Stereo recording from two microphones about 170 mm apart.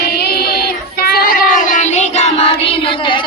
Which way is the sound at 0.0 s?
65° left (ahead or behind).